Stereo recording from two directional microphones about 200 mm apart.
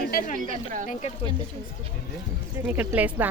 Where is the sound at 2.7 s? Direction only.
5° right (ahead or behind).